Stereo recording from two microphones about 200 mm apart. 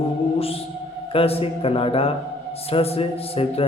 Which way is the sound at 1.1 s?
30° left (ahead or behind).